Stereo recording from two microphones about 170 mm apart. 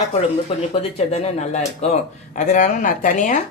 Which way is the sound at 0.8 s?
35° left (ahead or behind).